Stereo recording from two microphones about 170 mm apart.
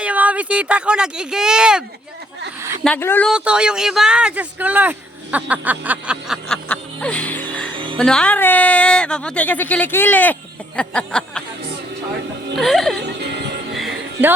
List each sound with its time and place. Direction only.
0.0 s speech: 10° right (ahead or behind)
2.8 s a woman's voice: 10° left (ahead or behind)
3.2 s speech: 5° right (ahead or behind)
6.7 s music: 5° left (ahead or behind)
7.9 s a woman's voice: 5° left (ahead or behind)
12.5 s speech: centre (ahead or behind)
13.0 s music: 80° right
13.7 s music: centre (ahead or behind)